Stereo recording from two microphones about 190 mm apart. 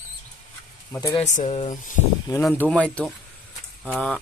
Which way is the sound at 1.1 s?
35° left (ahead or behind).